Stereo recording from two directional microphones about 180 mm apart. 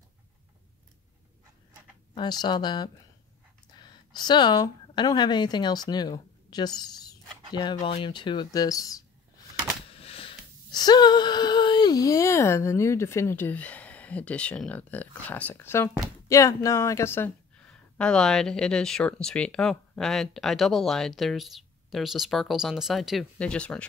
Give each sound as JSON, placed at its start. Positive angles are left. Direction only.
{"t": 2.1, "sound": "a woman's voice", "side_deg": 25}
{"t": 10.0, "sound": "speech", "side_deg": 30}